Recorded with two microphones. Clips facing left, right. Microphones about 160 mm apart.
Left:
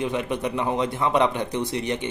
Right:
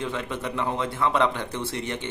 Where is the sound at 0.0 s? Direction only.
15° left (ahead or behind).